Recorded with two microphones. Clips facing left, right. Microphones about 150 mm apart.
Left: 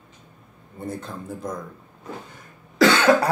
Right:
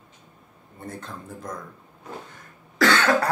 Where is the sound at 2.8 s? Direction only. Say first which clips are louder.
Left 4 dB; 10° left (ahead or behind).